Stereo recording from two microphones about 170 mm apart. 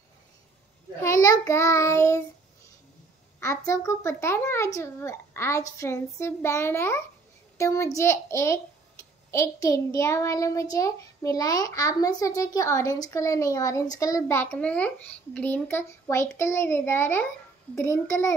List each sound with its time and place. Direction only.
1.0 s child singing: 20° left (ahead or behind)
3.3 s a child's voice: 15° left (ahead or behind)